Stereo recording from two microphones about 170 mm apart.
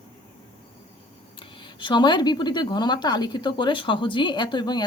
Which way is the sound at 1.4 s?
30° left (ahead or behind).